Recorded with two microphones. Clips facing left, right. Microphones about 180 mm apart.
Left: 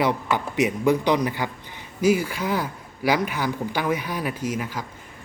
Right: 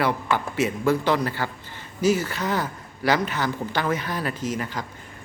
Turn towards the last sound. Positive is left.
turn(degrees=5)  # may be behind; listen again after turning